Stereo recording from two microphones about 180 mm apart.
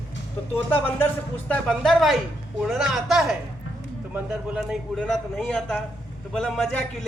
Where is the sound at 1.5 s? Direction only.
Centre (ahead or behind).